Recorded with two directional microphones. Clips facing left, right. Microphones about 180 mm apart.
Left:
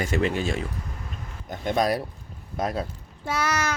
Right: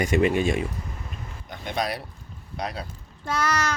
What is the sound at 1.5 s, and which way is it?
Speech, 45° left (ahead or behind).